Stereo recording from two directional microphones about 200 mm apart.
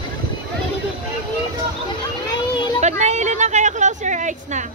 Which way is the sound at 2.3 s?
25° left (ahead or behind).